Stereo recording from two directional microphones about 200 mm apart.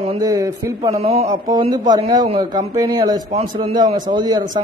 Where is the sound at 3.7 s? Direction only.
20° right (ahead or behind).